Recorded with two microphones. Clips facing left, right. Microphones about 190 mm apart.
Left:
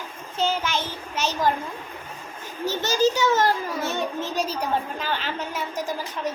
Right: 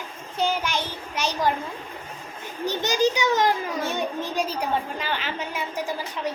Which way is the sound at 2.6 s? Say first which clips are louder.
Left 1 dB; 15° right (ahead or behind).